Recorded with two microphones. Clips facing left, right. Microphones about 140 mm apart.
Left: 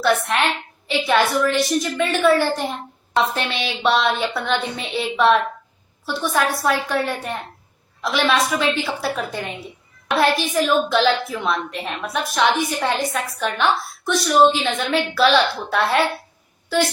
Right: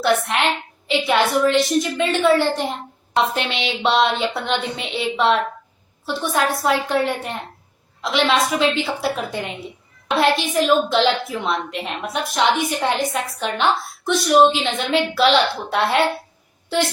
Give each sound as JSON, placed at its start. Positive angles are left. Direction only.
{"t": 0.0, "sound": "a woman's voice", "side_deg": -20}